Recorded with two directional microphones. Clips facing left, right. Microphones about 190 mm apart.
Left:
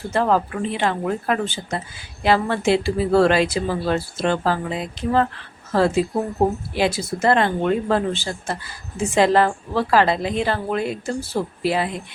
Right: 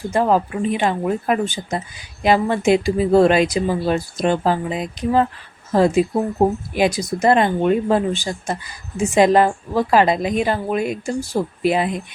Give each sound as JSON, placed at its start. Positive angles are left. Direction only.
{"t": 0.1, "sound": "speech", "side_deg": -15}